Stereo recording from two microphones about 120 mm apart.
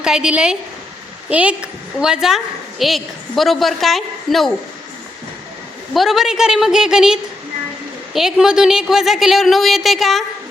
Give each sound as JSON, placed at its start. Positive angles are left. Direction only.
{"t": 0.0, "sound": "a woman's voice", "side_deg": -5}
{"t": 5.9, "sound": "a woman's voice", "side_deg": 0}